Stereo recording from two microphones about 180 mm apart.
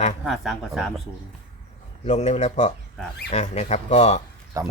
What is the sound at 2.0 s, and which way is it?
Speech, 40° left (ahead or behind).